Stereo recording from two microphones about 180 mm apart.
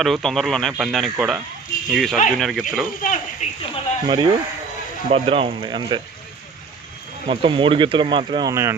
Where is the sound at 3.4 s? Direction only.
40° left (ahead or behind).